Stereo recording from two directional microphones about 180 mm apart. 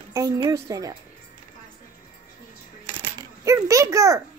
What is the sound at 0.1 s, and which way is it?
Speech, 15° right (ahead or behind).